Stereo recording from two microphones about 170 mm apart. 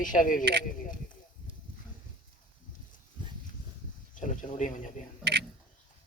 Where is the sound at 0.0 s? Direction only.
50° left (ahead or behind).